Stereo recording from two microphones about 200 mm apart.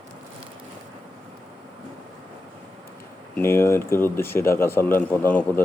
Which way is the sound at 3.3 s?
10° left (ahead or behind).